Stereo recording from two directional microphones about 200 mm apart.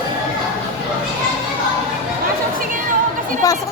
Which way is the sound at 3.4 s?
15° left (ahead or behind).